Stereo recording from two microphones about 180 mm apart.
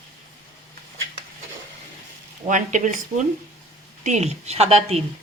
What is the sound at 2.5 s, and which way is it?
A woman's voice, 45° right (ahead or behind).